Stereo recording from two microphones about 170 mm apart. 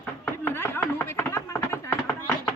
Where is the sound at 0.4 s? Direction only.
15° left (ahead or behind).